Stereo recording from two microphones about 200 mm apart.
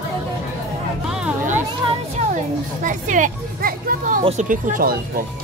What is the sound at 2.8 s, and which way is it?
Speech, 40° right (ahead or behind).